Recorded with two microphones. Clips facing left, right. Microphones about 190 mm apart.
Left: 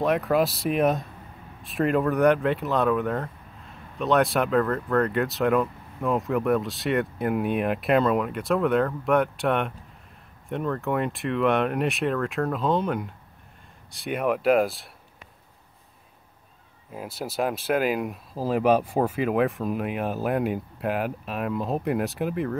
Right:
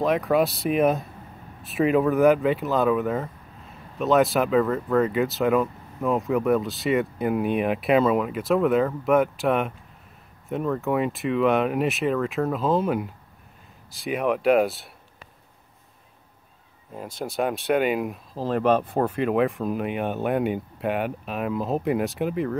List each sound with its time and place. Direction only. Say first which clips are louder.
0.0 s speech: right 1 dB; centre (ahead or behind)
16.9 s speech: right 1 dB; 5° left (ahead or behind)